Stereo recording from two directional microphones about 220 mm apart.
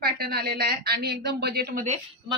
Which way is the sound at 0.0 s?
45° right (ahead or behind).